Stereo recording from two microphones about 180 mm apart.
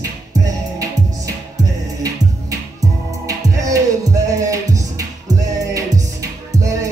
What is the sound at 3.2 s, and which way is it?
Music, 20° right (ahead or behind).